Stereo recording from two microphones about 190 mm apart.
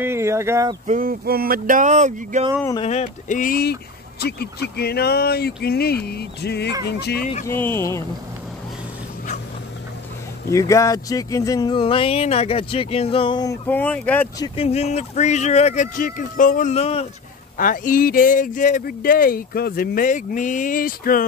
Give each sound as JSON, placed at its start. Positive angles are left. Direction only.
{"t": 0.0, "sound": "speech", "side_deg": -15}
{"t": 0.8, "sound": "speech", "side_deg": -45}
{"t": 2.8, "sound": "speech", "side_deg": 35}
{"t": 7.4, "sound": "speech", "side_deg": 10}
{"t": 10.5, "sound": "speech", "side_deg": 15}
{"t": 13.7, "sound": "speech", "side_deg": 10}
{"t": 14.4, "sound": "speech", "side_deg": 30}
{"t": 17.6, "sound": "speech", "side_deg": 45}